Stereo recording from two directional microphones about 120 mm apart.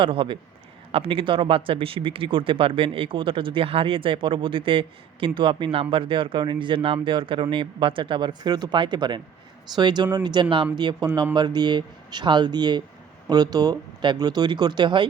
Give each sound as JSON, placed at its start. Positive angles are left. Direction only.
{"t": 0.0, "sound": "speech", "side_deg": -45}